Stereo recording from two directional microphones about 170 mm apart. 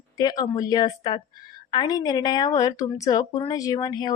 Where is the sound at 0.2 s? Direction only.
20° left (ahead or behind).